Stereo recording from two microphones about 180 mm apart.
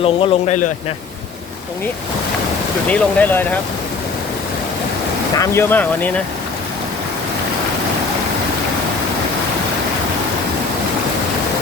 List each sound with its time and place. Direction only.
0.0 s a man's voice: 35° left (ahead or behind)
2.9 s speech: 10° left (ahead or behind)
5.4 s speech: 10° left (ahead or behind)